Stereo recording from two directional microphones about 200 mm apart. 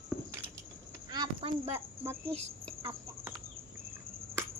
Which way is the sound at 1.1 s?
25° right (ahead or behind).